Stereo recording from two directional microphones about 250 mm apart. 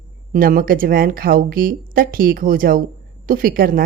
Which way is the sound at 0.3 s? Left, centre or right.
Right.